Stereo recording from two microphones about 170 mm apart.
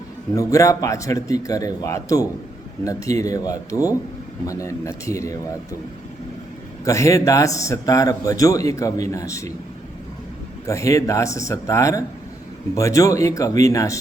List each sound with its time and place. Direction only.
0.3 s a man's voice: 20° left (ahead or behind)
6.8 s a man's voice: 20° left (ahead or behind)
10.7 s a man's voice: 20° left (ahead or behind)